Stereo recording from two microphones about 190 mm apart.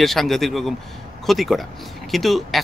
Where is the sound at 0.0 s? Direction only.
Centre (ahead or behind).